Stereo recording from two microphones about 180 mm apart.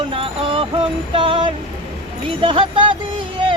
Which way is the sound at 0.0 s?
30° right (ahead or behind).